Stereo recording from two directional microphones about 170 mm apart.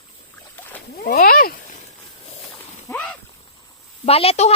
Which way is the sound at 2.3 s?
35° left (ahead or behind).